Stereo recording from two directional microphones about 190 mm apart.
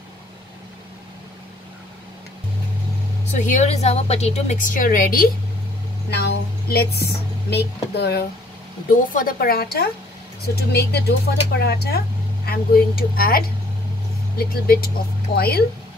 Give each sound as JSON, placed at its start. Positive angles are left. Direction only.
{"t": 3.3, "sound": "a woman's voice", "side_deg": 40}
{"t": 6.0, "sound": "a sound", "side_deg": 60}
{"t": 7.4, "sound": "speech", "side_deg": 60}
{"t": 8.9, "sound": "a woman's voice", "side_deg": 45}
{"t": 14.5, "sound": "a woman's voice", "side_deg": 55}